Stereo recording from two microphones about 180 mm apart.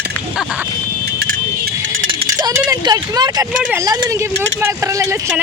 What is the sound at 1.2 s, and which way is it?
Keys jangling, 55° right (ahead or behind).